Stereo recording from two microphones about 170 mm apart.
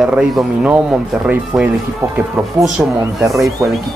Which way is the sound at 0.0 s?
5° right (ahead or behind).